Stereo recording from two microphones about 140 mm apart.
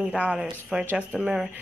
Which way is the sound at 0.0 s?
10° right (ahead or behind).